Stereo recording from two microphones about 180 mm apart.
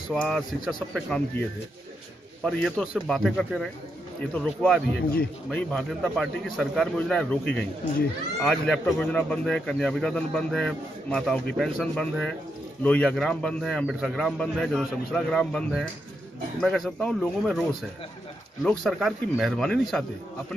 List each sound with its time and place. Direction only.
0.1 s speech: 5° left (ahead or behind)
2.4 s speech: centre (ahead or behind)